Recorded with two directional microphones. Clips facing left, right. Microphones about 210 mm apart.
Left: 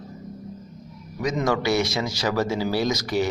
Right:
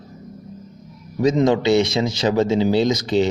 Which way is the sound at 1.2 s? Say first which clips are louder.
Right 7 dB; 25° right (ahead or behind).